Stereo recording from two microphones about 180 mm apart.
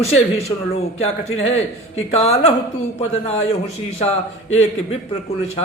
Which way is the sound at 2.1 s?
35° left (ahead or behind).